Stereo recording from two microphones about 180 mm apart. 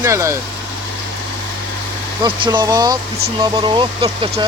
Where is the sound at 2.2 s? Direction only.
25° right (ahead or behind).